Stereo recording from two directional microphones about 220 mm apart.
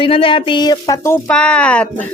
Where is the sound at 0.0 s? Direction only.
25° left (ahead or behind); by 2.0 s 5° left (ahead or behind).